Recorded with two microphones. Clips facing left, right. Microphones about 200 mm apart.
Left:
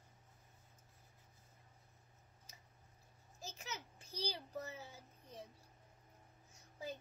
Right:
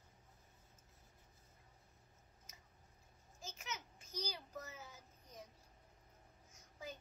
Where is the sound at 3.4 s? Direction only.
35° left (ahead or behind).